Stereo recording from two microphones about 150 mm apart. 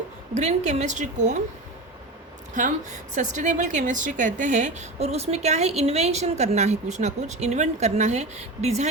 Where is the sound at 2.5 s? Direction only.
55° right (ahead or behind).